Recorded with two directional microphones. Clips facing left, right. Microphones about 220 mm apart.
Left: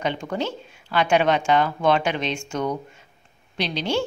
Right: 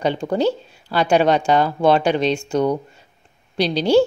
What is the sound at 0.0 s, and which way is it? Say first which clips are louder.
Speech: right 7 dB; 35° right (ahead or behind).